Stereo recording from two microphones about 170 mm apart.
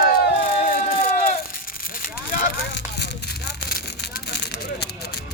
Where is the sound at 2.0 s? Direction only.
55° left (ahead or behind).